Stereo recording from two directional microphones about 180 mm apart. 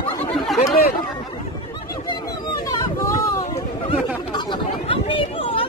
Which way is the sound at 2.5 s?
20° left (ahead or behind).